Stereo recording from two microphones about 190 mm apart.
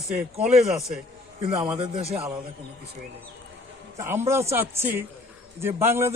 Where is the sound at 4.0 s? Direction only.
10° right (ahead or behind).